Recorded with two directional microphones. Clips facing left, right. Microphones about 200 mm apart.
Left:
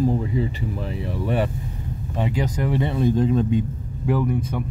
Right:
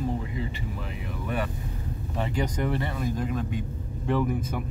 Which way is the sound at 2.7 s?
25° left (ahead or behind).